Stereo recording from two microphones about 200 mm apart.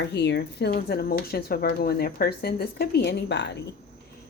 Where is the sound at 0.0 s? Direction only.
60° left (ahead or behind).